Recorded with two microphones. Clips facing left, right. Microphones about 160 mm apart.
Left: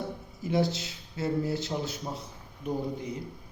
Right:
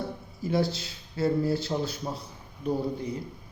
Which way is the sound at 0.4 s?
20° left (ahead or behind).